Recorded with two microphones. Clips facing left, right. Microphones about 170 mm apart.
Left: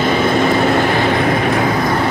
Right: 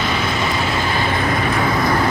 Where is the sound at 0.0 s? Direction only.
55° left (ahead or behind).